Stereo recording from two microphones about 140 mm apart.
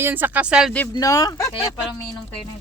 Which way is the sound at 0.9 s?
25° left (ahead or behind).